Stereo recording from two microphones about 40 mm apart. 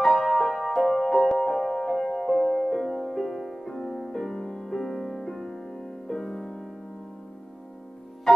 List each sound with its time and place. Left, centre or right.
0.2 s music: centre
4.4 s music: centre
4.6 s music: centre